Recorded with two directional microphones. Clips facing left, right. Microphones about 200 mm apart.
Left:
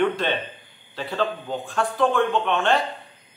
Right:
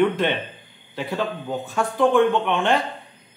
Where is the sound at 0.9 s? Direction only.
15° right (ahead or behind).